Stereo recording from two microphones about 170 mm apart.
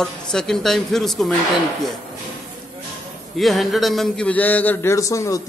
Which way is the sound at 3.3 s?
Centre (ahead or behind).